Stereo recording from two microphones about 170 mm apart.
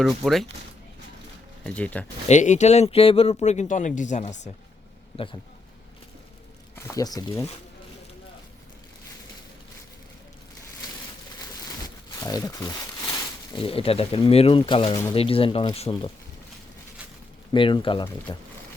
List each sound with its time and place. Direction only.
0.2 s speech: 5° left (ahead or behind)
1.6 s speech: 10° left (ahead or behind)
2.2 s speech: 45° left (ahead or behind)
5.1 s speech: 30° left (ahead or behind)
6.7 s speech: 20° left (ahead or behind)
12.2 s speech: 20° left (ahead or behind)
13.5 s speech: 35° left (ahead or behind)
15.1 s speech: 35° left (ahead or behind)
17.5 s speech: 30° left (ahead or behind)